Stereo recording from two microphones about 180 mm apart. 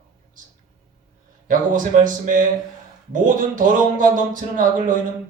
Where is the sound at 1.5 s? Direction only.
45° right (ahead or behind).